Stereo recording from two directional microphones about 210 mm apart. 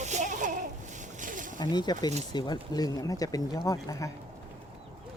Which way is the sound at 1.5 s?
20° left (ahead or behind).